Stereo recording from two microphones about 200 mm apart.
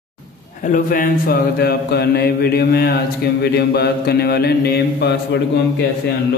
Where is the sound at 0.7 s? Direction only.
45° left (ahead or behind).